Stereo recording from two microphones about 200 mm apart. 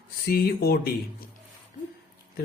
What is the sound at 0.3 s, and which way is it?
Mantra, 50° left (ahead or behind).